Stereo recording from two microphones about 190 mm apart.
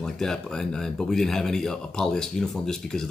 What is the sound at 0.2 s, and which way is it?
Speech, 5° left (ahead or behind).